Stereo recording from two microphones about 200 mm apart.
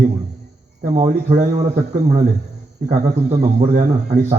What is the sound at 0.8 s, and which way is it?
Speech, 40° right (ahead or behind).